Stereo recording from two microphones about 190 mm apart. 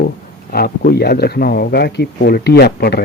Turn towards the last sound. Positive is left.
turn(degrees=55)  # may be behind; listen again after turning